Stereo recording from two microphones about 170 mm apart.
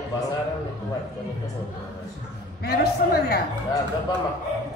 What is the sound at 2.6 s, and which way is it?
Speech, 65° left (ahead or behind).